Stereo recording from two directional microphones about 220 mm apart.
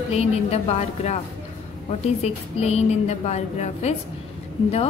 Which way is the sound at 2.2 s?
30° left (ahead or behind).